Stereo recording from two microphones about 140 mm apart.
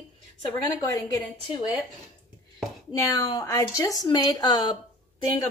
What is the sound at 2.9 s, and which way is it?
Speech, 25° left (ahead or behind).